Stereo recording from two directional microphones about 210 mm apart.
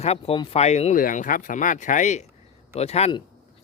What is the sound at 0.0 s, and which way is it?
Speech, 30° left (ahead or behind).